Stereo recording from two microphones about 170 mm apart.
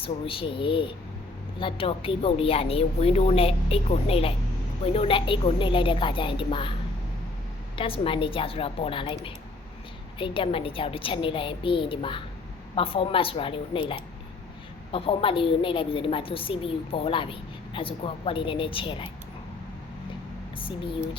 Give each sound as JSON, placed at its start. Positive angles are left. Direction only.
{"t": 0.0, "sound": "a woman's voice", "side_deg": 30}
{"t": 7.8, "sound": "a woman's voice", "side_deg": 30}
{"t": 20.6, "sound": "a woman's voice", "side_deg": 30}